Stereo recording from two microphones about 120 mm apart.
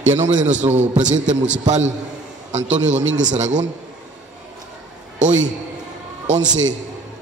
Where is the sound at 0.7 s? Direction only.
70° right (ahead or behind).